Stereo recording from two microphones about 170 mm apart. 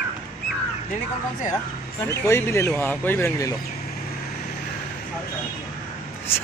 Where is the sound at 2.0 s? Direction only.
15° left (ahead or behind).